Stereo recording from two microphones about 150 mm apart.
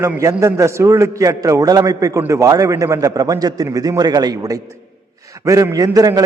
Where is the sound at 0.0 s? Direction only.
20° right (ahead or behind).